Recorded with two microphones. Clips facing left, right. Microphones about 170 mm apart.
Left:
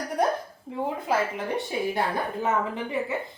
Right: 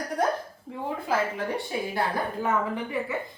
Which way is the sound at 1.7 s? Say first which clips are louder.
Left 2 dB; 20° left (ahead or behind).